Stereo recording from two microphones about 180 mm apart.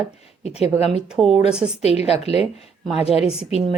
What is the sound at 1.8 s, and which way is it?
Speech, 35° left (ahead or behind).